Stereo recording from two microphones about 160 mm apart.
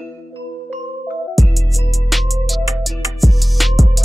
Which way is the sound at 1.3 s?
Centre (ahead or behind).